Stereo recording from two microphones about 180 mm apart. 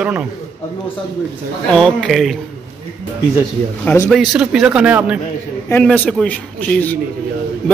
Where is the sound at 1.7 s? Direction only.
5° left (ahead or behind).